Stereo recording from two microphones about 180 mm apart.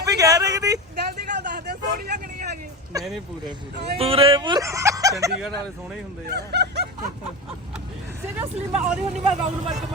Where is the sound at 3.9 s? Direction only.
30° right (ahead or behind).